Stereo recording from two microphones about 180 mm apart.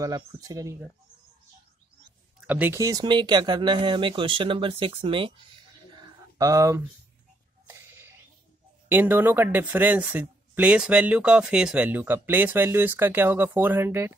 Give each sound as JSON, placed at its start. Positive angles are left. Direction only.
{"t": 0.0, "sound": "speech", "side_deg": -20}
{"t": 2.4, "sound": "speech", "side_deg": -10}
{"t": 5.9, "sound": "a sound", "side_deg": -25}
{"t": 8.8, "sound": "speech", "side_deg": -10}